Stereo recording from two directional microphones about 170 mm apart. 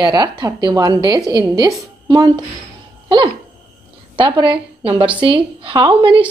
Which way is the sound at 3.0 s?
30° right (ahead or behind).